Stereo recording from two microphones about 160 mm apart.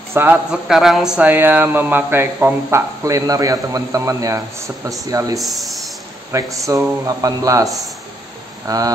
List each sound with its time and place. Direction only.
0.1 s speech: 10° right (ahead or behind)
5.4 s speech: centre (ahead or behind)
6.3 s speech: 20° right (ahead or behind)